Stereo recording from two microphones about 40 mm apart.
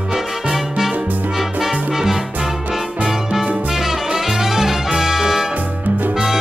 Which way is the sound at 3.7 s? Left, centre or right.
Centre.